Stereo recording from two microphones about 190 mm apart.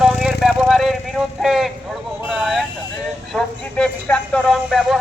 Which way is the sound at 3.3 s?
5° left (ahead or behind).